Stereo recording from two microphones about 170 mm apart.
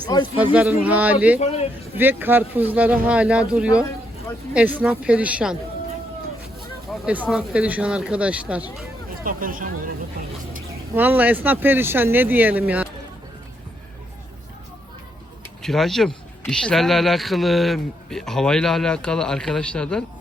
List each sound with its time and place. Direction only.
0.3 s speech: 10° right (ahead or behind)
1.4 s a man's voice: 40° left (ahead or behind)
2.0 s speech: 10° right (ahead or behind)
6.9 s speech: 5° right (ahead or behind)
9.0 s speech: 55° right (ahead or behind)
10.9 s speech: 10° right (ahead or behind)
15.6 s speech: centre (ahead or behind)